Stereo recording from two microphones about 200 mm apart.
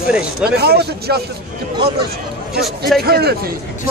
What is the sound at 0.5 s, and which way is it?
Speech, 50° right (ahead or behind).